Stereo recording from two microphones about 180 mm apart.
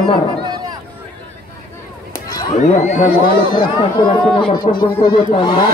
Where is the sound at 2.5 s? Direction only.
40° left (ahead or behind).